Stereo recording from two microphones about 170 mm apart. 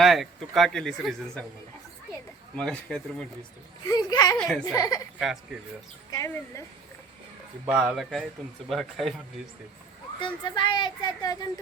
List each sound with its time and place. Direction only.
0.0 s speech: centre (ahead or behind)
2.6 s speech: 5° left (ahead or behind)
3.8 s speech: 25° left (ahead or behind)
4.4 s speech: 5° left (ahead or behind)
4.6 s speech: 20° left (ahead or behind)
5.2 s speech: centre (ahead or behind)
6.1 s speech: 15° left (ahead or behind)
7.7 s speech: 5° right (ahead or behind)
10.2 s speech: 30° left (ahead or behind)